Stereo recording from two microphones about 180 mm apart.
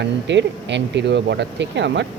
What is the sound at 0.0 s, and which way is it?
Speech, 75° right (ahead or behind).